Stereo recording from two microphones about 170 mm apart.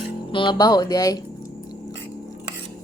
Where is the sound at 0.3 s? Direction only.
30° left (ahead or behind).